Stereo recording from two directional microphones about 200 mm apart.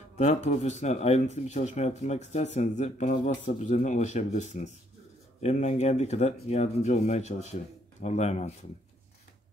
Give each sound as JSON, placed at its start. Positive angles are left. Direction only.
{"t": 0.1, "sound": "speech", "side_deg": 35}